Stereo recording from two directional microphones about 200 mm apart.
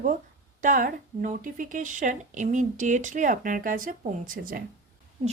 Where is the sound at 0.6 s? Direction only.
40° right (ahead or behind).